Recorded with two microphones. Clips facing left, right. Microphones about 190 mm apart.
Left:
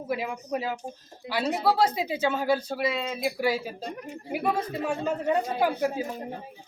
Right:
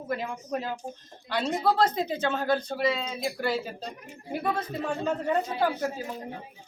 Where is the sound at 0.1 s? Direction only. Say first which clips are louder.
Left 1 dB; 10° left (ahead or behind).